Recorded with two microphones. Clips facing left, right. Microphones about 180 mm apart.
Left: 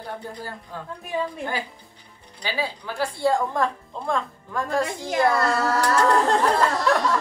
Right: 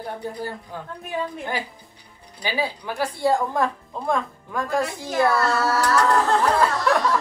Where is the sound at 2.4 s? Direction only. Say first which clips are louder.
Right 2 dB; 15° right (ahead or behind).